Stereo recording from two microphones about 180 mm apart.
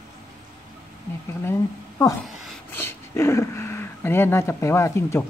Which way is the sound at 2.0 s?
20° left (ahead or behind).